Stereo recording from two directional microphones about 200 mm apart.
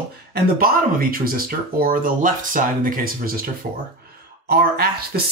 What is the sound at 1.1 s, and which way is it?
Speech, 45° right (ahead or behind).